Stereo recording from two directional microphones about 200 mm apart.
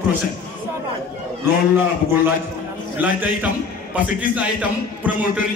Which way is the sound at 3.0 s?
10° right (ahead or behind).